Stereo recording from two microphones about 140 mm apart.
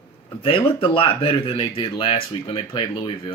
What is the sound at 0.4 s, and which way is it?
Speech, 40° left (ahead or behind).